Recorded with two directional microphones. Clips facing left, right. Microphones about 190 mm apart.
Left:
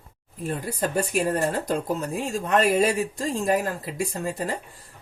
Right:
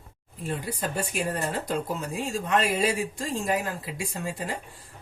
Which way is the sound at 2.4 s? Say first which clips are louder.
Left 5 dB; 45° left (ahead or behind).